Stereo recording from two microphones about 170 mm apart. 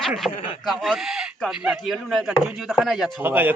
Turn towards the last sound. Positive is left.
turn(degrees=-10)  # may be behind; listen again after turning